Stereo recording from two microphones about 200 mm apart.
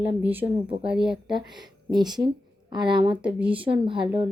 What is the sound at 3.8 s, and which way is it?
Speech, 25° right (ahead or behind).